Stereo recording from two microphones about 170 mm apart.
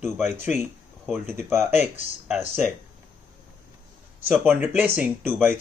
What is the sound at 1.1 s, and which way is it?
Speech, 15° right (ahead or behind).